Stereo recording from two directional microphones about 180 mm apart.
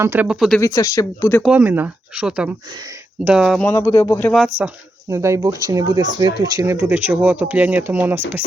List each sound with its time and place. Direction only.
0.0 s speech: 10° right (ahead or behind)
0.6 s speech: 15° left (ahead or behind)
1.4 s speech: 5° right (ahead or behind)
3.7 s speech: 15° left (ahead or behind)
4.5 s speech: 15° right (ahead or behind)
6.6 s speech: 10° right (ahead or behind)